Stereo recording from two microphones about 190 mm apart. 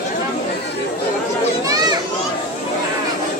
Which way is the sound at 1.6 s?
20° right (ahead or behind).